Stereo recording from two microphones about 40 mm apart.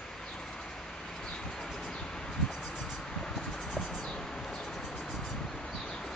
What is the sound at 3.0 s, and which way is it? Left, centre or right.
Vehicle, centre.